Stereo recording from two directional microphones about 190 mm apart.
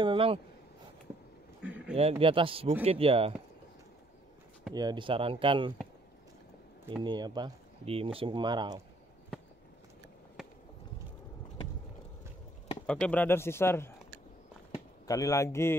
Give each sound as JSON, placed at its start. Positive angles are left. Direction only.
{"t": 0.0, "sound": "a sound", "side_deg": -25}
{"t": 1.6, "sound": "a sound", "side_deg": -5}
{"t": 2.0, "sound": "speech", "side_deg": -30}
{"t": 4.7, "sound": "speech", "side_deg": -25}
{"t": 7.0, "sound": "speech", "side_deg": -20}
{"t": 12.8, "sound": "speech", "side_deg": 5}
{"t": 15.0, "sound": "speech", "side_deg": 15}